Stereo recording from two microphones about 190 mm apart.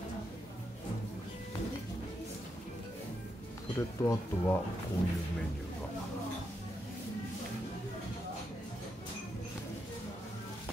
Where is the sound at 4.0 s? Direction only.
15° left (ahead or behind).